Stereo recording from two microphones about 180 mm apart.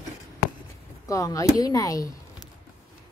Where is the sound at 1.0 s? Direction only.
20° left (ahead or behind).